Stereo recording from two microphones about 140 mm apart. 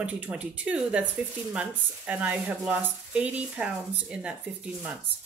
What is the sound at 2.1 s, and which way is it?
Speech, 10° right (ahead or behind).